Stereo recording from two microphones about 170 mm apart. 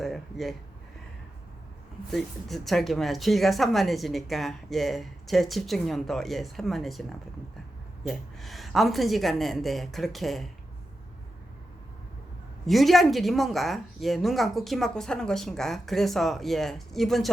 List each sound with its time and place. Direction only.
0.0 s speech: centre (ahead or behind)
2.0 s speech: centre (ahead or behind)
8.0 s speech: centre (ahead or behind)
12.6 s speech: centre (ahead or behind)